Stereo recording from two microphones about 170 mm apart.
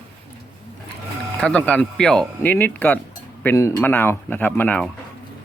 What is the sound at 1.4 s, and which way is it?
Speech, 5° left (ahead or behind).